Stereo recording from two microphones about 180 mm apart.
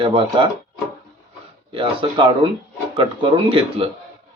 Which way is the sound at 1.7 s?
30° right (ahead or behind).